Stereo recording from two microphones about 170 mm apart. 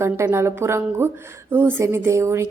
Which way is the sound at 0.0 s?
15° right (ahead or behind).